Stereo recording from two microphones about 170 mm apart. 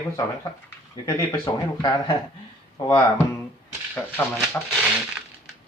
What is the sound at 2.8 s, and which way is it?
Speech, 25° left (ahead or behind).